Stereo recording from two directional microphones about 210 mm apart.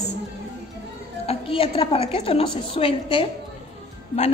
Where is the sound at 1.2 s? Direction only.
25° left (ahead or behind).